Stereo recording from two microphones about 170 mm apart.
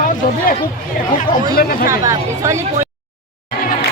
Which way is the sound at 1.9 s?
20° right (ahead or behind).